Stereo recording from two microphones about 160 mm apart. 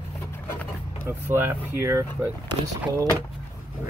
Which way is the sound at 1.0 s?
15° right (ahead or behind).